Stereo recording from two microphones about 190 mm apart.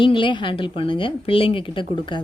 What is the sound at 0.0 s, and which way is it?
Speech, 25° left (ahead or behind).